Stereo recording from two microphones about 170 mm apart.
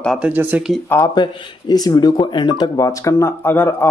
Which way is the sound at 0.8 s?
20° left (ahead or behind).